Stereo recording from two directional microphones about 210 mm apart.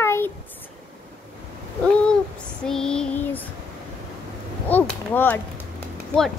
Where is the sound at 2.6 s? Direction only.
5° left (ahead or behind).